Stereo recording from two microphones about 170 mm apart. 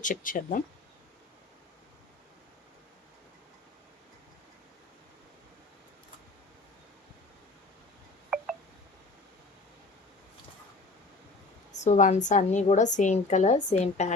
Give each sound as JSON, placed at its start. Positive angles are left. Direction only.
{"t": 0.0, "sound": "a woman's voice", "side_deg": 50}
{"t": 8.3, "sound": "telephone dialing", "side_deg": 0}
{"t": 11.8, "sound": "a woman's voice", "side_deg": 45}